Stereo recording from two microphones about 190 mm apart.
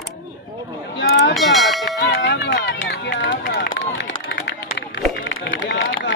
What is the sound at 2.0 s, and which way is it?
Run, 65° left (ahead or behind).